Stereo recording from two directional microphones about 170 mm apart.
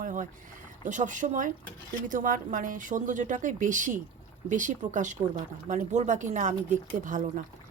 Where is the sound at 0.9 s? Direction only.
45° right (ahead or behind).